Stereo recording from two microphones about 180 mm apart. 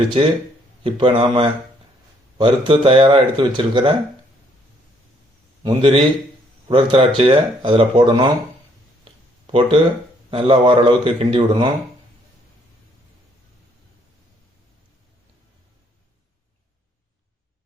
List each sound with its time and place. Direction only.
0.9 s speech: 30° right (ahead or behind)
5.6 s speech: 30° right (ahead or behind)
9.5 s speech: 30° right (ahead or behind)